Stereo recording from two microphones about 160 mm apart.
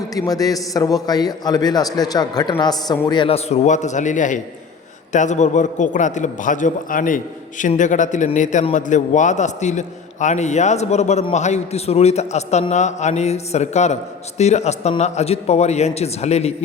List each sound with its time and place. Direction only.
0.1 s a man's voice: 20° left (ahead or behind); by 16.6 s 40° left (ahead or behind)